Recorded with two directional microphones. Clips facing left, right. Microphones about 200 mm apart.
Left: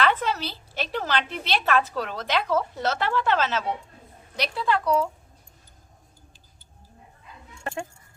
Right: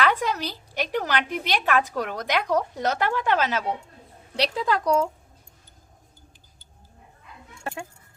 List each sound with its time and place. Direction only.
0.0 s a woman's voice: 10° right (ahead or behind)
4.4 s a woman's voice: 40° right (ahead or behind)